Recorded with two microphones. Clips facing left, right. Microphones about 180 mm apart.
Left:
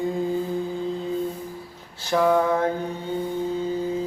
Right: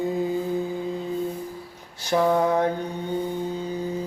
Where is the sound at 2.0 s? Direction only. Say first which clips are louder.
Left 1 dB; 15° right (ahead or behind).